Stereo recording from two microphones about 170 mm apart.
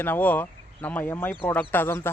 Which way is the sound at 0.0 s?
10° left (ahead or behind).